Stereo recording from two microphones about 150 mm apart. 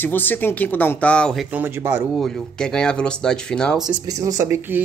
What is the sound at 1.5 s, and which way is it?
Speech, 15° right (ahead or behind).